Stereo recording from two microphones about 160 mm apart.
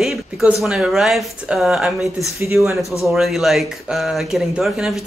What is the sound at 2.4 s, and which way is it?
Speech, 15° right (ahead or behind).